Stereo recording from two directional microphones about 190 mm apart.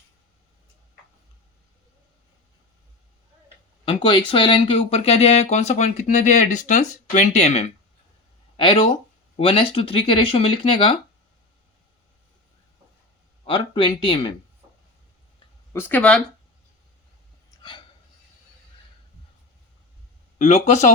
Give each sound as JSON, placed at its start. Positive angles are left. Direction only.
{"t": 3.8, "sound": "speech", "side_deg": 25}
{"t": 13.4, "sound": "speech", "side_deg": 25}
{"t": 15.7, "sound": "speech", "side_deg": 10}
{"t": 17.6, "sound": "a sound", "side_deg": 25}
{"t": 20.4, "sound": "speech", "side_deg": 40}